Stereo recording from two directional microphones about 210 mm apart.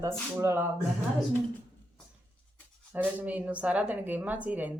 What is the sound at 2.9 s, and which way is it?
Speech, 5° right (ahead or behind).